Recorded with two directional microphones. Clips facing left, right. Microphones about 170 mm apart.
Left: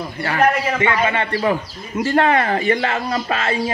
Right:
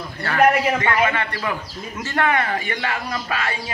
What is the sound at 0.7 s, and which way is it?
Speech, 25° left (ahead or behind).